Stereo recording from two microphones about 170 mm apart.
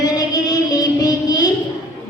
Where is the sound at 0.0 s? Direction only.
25° left (ahead or behind).